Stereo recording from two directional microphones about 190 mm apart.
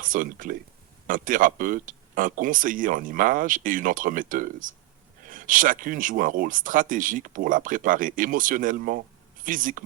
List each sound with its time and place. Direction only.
0.0 s speech: 45° right (ahead or behind)